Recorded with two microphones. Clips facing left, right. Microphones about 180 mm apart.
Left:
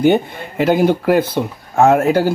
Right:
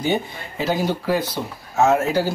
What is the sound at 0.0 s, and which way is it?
Speech, 60° left (ahead or behind).